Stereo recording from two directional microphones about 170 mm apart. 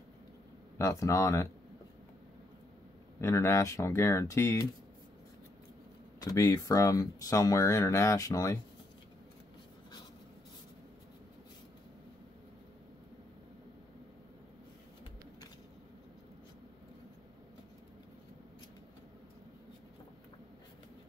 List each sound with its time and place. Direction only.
0.7 s speech: 15° left (ahead or behind)
3.2 s speech: 15° left (ahead or behind)
6.2 s speech: 20° left (ahead or behind)